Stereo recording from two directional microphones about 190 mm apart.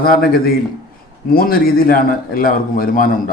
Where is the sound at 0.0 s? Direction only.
50° left (ahead or behind).